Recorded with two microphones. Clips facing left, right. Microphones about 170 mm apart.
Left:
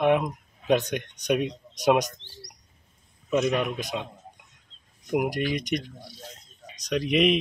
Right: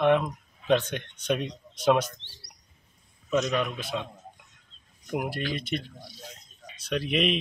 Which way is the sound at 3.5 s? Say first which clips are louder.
Left 1 dB; 15° left (ahead or behind).